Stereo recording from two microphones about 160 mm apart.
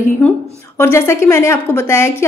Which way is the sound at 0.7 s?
15° left (ahead or behind).